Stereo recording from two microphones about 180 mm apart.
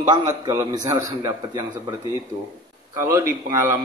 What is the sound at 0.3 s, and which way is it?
A man's voice, 15° right (ahead or behind).